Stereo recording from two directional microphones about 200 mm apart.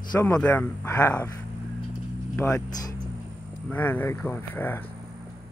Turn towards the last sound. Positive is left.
turn(degrees=10)  # may be behind; listen again after turning